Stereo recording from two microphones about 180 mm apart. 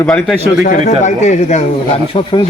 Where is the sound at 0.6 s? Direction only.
45° left (ahead or behind).